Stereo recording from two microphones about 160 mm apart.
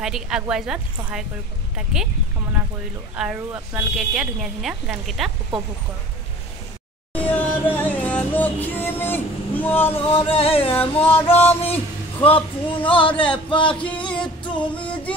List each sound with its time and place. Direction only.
0.0 s speech: 5° right (ahead or behind)
3.2 s speech: 5° right (ahead or behind)
7.1 s music: 10° left (ahead or behind)
9.9 s a sound: 35° left (ahead or behind)
11.1 s music: 15° left (ahead or behind)
12.2 s a sound: 35° left (ahead or behind)
13.8 s music: 5° left (ahead or behind)